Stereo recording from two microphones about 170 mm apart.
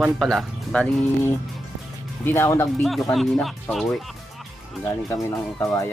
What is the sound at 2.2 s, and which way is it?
Speech, 15° left (ahead or behind).